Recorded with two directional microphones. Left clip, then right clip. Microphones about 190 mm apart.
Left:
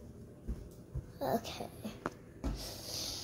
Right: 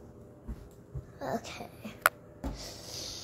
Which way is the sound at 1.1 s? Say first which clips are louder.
Left 1 dB; 10° left (ahead or behind).